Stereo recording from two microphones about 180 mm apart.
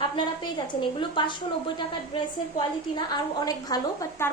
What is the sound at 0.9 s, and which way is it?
Speech, 25° left (ahead or behind).